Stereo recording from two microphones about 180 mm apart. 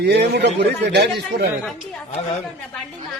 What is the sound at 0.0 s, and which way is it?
A man's voice, 65° right (ahead or behind).